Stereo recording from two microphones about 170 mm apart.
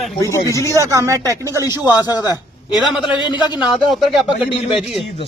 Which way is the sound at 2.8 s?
Centre (ahead or behind).